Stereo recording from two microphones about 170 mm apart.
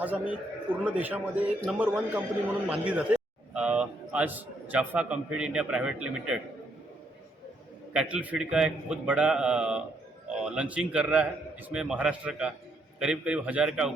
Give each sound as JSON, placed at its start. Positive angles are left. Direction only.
{"t": 0.0, "sound": "a man's voice", "side_deg": -10}
{"t": 7.9, "sound": "a man's voice", "side_deg": -10}